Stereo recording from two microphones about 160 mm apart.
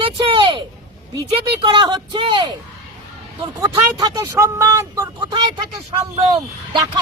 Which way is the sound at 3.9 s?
20° right (ahead or behind).